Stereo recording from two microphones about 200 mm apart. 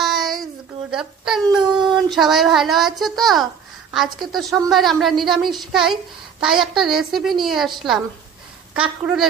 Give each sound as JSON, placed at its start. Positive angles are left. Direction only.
{"t": 0.0, "sound": "a sound", "side_deg": 0}
{"t": 1.9, "sound": "speech", "side_deg": 0}
{"t": 9.0, "sound": "speech", "side_deg": 0}